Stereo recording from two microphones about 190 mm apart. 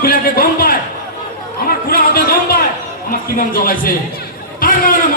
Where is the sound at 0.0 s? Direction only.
50° left (ahead or behind).